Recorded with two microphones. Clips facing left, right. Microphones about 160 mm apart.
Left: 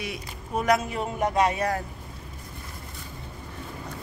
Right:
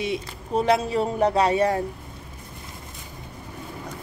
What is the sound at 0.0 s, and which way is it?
Speech, 25° right (ahead or behind).